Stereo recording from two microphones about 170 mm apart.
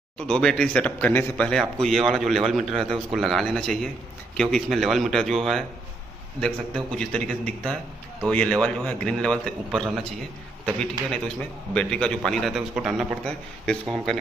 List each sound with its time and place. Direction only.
0.3 s a man's voice: 5° left (ahead or behind)